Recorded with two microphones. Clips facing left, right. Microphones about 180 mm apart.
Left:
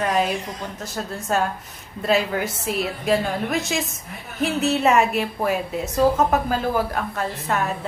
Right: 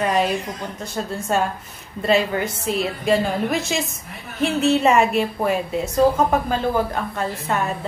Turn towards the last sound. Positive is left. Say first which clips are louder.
# right 1 dB
turn(degrees=0)  # may be behind; listen again after turning